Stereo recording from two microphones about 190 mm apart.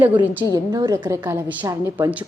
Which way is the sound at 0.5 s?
20° right (ahead or behind).